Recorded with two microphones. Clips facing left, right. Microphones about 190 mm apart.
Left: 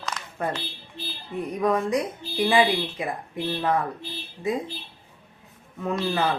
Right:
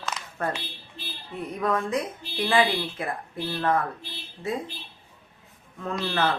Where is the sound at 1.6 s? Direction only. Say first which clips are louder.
Left 3 dB; 15° left (ahead or behind).